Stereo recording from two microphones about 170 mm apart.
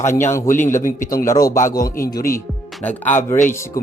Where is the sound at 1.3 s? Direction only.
20° left (ahead or behind).